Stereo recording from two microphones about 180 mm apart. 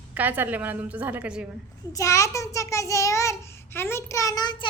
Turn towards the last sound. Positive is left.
turn(degrees=25)  # may be behind; listen again after turning